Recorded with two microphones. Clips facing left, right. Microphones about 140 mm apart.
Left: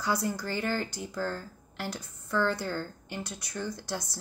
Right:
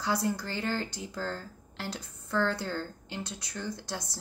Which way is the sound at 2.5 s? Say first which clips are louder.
Left 1 dB; 20° right (ahead or behind).